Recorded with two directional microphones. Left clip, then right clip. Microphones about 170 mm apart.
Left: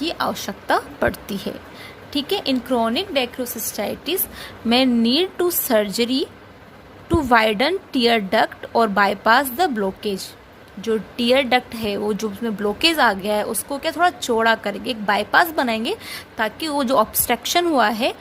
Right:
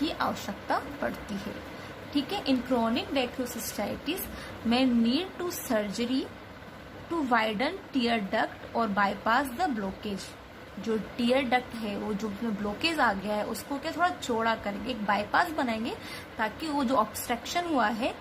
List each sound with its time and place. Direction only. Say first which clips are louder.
0.0 s a woman's voice: left 7 dB; 50° left (ahead or behind)
2.1 s a woman's voice: left 8 dB; 55° left (ahead or behind)
7.3 s a woman's voice: left 11 dB; 60° left (ahead or behind)